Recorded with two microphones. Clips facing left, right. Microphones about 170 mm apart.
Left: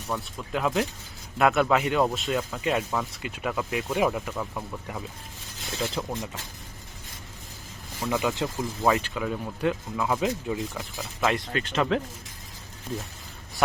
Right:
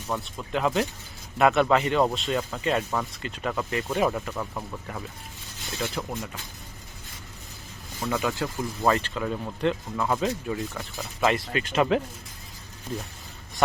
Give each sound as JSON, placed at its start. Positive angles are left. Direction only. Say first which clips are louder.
{"t": 0.1, "sound": "speech", "louder": "right 1 dB", "side_deg": 0}
{"t": 5.8, "sound": "speech", "louder": "left 1 dB", "side_deg": 10}
{"t": 8.1, "sound": "speech", "louder": "left 1 dB", "side_deg": 20}
{"t": 8.5, "sound": "speech", "louder": "right 2 dB", "side_deg": 0}
{"t": 10.2, "sound": "speech", "louder": "even", "side_deg": 15}
{"t": 10.9, "sound": "speech", "louder": "right 2 dB", "side_deg": 0}